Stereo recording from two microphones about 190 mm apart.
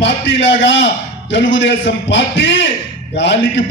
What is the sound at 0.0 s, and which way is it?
A man's voice, 70° left (ahead or behind).